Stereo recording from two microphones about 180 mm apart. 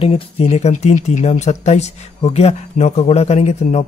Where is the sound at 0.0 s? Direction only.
35° left (ahead or behind).